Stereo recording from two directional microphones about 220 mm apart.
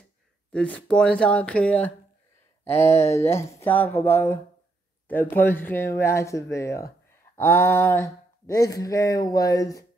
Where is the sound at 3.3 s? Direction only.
10° left (ahead or behind).